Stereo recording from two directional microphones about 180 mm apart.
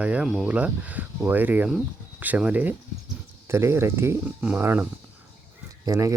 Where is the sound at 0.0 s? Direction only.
5° right (ahead or behind).